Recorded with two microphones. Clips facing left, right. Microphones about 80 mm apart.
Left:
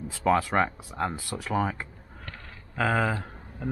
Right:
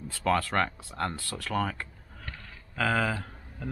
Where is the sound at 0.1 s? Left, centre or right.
Centre.